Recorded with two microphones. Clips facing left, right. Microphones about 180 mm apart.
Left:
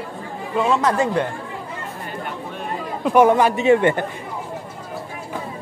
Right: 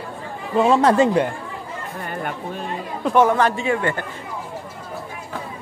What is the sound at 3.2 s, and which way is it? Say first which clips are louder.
Speech: left 4 dB; 15° left (ahead or behind).